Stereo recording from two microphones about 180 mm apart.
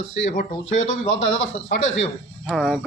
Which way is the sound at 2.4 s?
Centre (ahead or behind).